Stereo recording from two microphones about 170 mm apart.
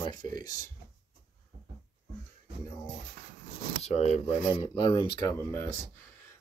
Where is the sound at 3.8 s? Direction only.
40° left (ahead or behind).